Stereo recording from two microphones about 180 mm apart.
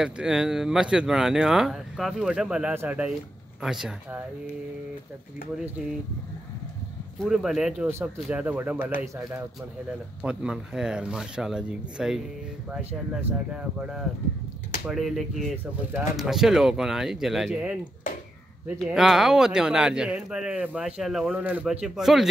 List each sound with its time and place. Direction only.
0.0 s speech: 5° right (ahead or behind)
7.2 s speech: centre (ahead or behind)
10.2 s speech: 5° right (ahead or behind)
18.9 s speech: centre (ahead or behind)